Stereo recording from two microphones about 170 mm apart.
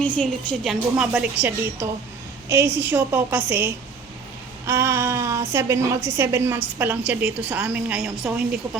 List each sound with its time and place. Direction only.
0.0 s a woman's voice: 5° left (ahead or behind)